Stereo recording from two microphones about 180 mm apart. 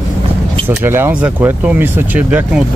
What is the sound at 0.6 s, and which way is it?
Speech, 10° right (ahead or behind).